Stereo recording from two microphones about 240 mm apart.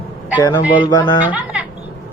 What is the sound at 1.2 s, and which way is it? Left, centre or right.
Speech, centre.